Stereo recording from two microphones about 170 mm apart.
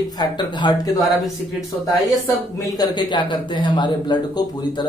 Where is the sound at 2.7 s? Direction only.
25° left (ahead or behind).